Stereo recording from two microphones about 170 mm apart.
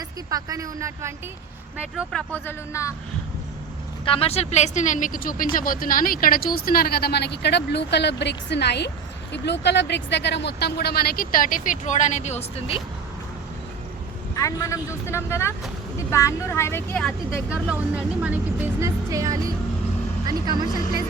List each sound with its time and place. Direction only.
0.3 s speech: 20° right (ahead or behind)
2.1 s speech: 10° left (ahead or behind)
4.0 s a woman's voice: 35° left (ahead or behind); by 8.9 s 80° left
9.3 s speech: 90° left; by 12.8 s 35° left (ahead or behind)
14.3 s speech: 20° left (ahead or behind)
17.5 s speech: 10° right (ahead or behind); by 21.0 s 25° right (ahead or behind)